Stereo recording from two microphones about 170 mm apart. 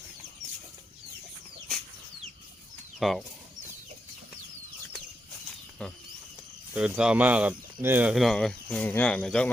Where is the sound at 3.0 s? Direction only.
Centre (ahead or behind).